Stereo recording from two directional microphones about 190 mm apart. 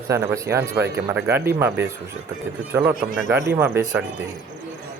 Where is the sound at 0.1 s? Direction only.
15° right (ahead or behind).